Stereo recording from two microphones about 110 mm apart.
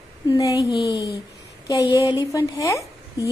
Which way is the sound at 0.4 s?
30° left (ahead or behind).